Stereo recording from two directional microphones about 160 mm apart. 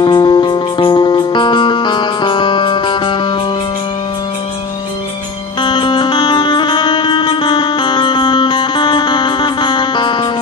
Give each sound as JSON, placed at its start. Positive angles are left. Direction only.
{"t": 0.0, "sound": "music", "side_deg": 30}
{"t": 5.6, "sound": "music", "side_deg": 30}